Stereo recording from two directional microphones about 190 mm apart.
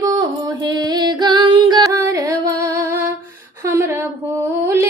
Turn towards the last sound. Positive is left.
turn(degrees=-15)  # may be behind; listen again after turning